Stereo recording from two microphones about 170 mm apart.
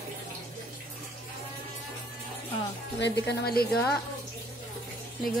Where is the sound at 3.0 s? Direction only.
70° left (ahead or behind).